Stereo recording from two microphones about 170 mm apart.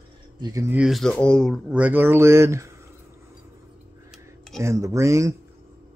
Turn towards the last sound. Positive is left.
turn(degrees=-15)  # may be behind; listen again after turning